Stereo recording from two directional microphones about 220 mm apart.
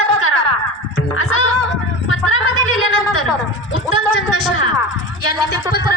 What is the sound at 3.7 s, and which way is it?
Music, 65° left (ahead or behind).